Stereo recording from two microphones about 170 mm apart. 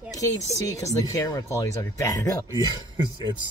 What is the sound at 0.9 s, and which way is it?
Speech, 20° left (ahead or behind).